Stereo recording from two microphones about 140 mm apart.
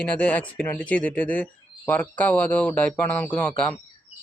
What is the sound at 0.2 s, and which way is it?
Speech, 10° left (ahead or behind).